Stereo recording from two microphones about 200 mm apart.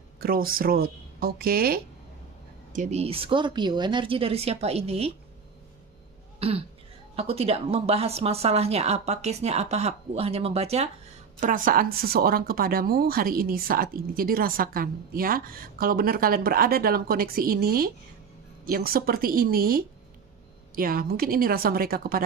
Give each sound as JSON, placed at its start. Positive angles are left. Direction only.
{"t": 0.2, "sound": "speech", "side_deg": -45}
{"t": 2.7, "sound": "a woman's voice", "side_deg": -35}
{"t": 6.4, "sound": "a sound", "side_deg": -30}
{"t": 7.2, "sound": "a woman's voice", "side_deg": -30}